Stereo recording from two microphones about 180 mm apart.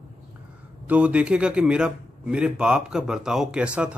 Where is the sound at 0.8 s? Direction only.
5° right (ahead or behind).